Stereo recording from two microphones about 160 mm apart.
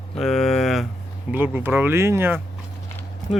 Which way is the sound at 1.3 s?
10° right (ahead or behind).